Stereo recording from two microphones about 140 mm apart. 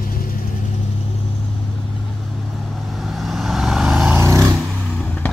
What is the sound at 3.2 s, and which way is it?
Vehicle, centre (ahead or behind).